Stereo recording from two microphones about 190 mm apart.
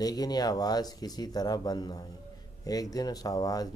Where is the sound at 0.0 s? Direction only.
20° left (ahead or behind).